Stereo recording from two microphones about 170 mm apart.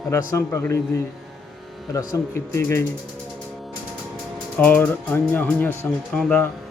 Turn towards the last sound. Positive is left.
turn(degrees=10)  # may be behind; listen again after turning